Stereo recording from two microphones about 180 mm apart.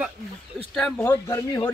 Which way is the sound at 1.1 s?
20° left (ahead or behind).